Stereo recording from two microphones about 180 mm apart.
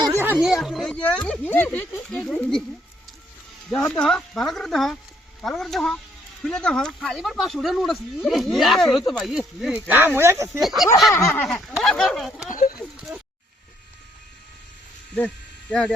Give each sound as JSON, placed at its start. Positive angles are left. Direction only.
{"t": 0.0, "sound": "a sound", "side_deg": -15}
{"t": 0.4, "sound": "speech", "side_deg": 0}
{"t": 3.8, "sound": "speech", "side_deg": 5}
{"t": 10.6, "sound": "speech", "side_deg": 0}
{"t": 11.1, "sound": "a sound", "side_deg": 15}
{"t": 11.4, "sound": "speech", "side_deg": 0}
{"t": 12.5, "sound": "speech", "side_deg": 50}